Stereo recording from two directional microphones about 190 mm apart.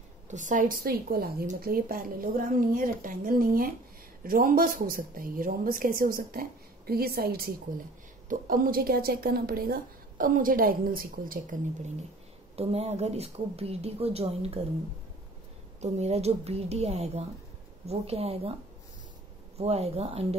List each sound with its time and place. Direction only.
0.3 s a woman's voice: 40° right (ahead or behind)
12.5 s speech: 35° right (ahead or behind)
15.8 s speech: 35° right (ahead or behind)
19.6 s speech: 35° right (ahead or behind)